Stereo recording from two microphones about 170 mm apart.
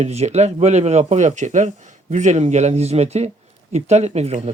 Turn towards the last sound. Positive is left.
turn(degrees=-40)  # may be behind; listen again after turning